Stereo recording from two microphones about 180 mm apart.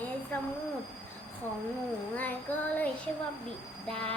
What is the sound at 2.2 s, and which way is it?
Child singing, 10° left (ahead or behind).